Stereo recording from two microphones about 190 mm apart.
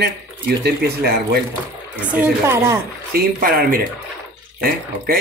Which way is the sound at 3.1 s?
50° right (ahead or behind).